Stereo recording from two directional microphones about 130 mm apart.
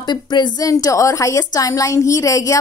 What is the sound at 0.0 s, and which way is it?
A woman's voice, 35° left (ahead or behind).